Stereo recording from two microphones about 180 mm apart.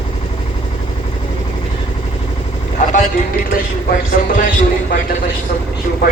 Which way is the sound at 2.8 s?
40° left (ahead or behind).